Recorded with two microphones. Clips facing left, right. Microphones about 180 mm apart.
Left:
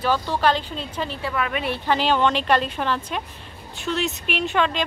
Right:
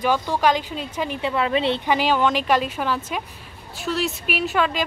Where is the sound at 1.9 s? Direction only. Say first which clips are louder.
Left 2 dB; 10° right (ahead or behind).